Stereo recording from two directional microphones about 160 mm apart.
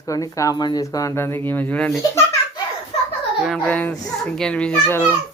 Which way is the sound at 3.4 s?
5° left (ahead or behind).